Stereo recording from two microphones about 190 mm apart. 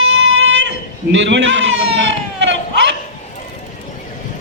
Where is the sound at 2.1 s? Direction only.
70° right (ahead or behind).